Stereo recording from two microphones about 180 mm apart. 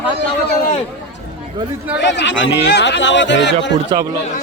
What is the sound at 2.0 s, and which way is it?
Speech, 75° left (ahead or behind).